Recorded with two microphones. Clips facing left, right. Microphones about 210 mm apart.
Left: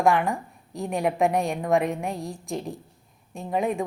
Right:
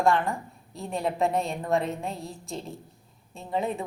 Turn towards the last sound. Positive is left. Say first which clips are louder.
# left 4 dB
turn(degrees=15)  # may be behind; listen again after turning